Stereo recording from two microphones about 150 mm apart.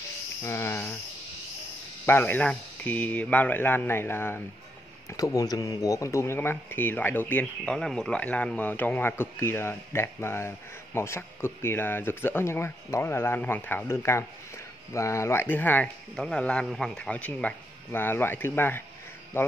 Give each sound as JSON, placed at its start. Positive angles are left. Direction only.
{"t": 0.4, "sound": "speech", "side_deg": 20}
{"t": 2.0, "sound": "speech", "side_deg": 15}